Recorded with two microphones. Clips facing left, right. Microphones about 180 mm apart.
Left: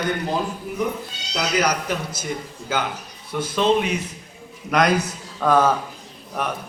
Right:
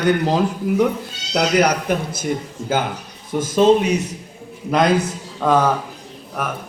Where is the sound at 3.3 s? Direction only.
45° right (ahead or behind).